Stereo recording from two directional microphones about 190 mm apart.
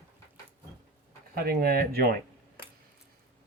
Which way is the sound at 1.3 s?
50° right (ahead or behind).